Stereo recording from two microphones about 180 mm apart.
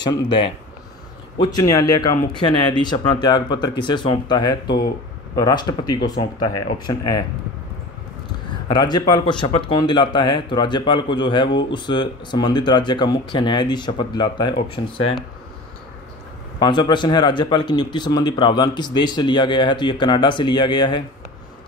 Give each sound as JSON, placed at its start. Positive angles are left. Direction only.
{"t": 0.0, "sound": "speech", "side_deg": 25}
{"t": 8.6, "sound": "speech", "side_deg": 25}
{"t": 14.8, "sound": "speech", "side_deg": 50}
{"t": 16.6, "sound": "speech", "side_deg": 25}